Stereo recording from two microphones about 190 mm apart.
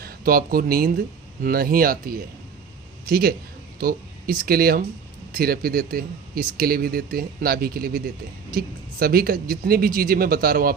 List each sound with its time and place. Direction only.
0.0 s speech: 50° right (ahead or behind)